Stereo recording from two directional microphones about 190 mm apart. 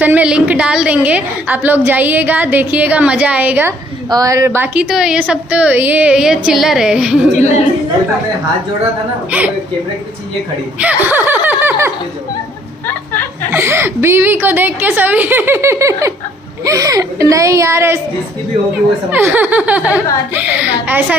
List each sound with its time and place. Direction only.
0.0 s a woman's voice: 5° right (ahead or behind)
9.3 s a woman's voice: 10° right (ahead or behind)
10.8 s laughter: 10° right (ahead or behind)
13.5 s a woman's voice: 10° right (ahead or behind)
19.1 s a woman's voice: 10° right (ahead or behind)